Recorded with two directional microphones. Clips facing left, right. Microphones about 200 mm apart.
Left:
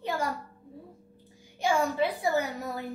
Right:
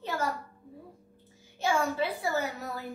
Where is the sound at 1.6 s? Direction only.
15° left (ahead or behind).